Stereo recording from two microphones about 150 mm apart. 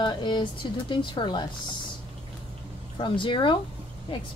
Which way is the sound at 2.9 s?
35° left (ahead or behind).